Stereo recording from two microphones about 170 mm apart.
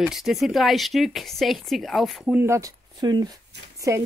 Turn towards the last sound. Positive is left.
turn(degrees=-20)  # may be behind; listen again after turning